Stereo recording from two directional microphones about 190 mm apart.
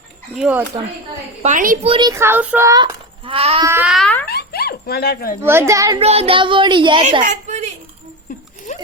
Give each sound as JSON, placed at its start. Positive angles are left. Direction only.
{"t": 0.3, "sound": "speech", "side_deg": -5}
{"t": 1.4, "sound": "a woman's voice", "side_deg": -40}
{"t": 1.8, "sound": "speech", "side_deg": -25}
{"t": 2.1, "sound": "speech", "side_deg": -10}
{"t": 3.7, "sound": "a child's voice", "side_deg": -10}
{"t": 3.9, "sound": "a sound", "side_deg": 5}
{"t": 4.3, "sound": "dog", "side_deg": 55}
{"t": 5.4, "sound": "a child's voice", "side_deg": -15}
{"t": 6.0, "sound": "speech", "side_deg": -30}
{"t": 7.2, "sound": "a sound", "side_deg": -40}